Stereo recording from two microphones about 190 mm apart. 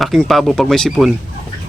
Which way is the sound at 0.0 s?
Centre (ahead or behind).